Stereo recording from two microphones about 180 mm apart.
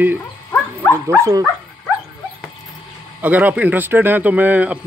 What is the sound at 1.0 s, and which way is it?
Speech, 15° right (ahead or behind).